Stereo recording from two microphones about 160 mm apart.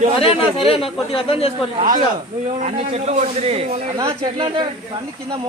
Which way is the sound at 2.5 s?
45° right (ahead or behind).